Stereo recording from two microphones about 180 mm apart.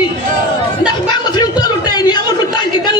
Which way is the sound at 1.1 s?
25° left (ahead or behind).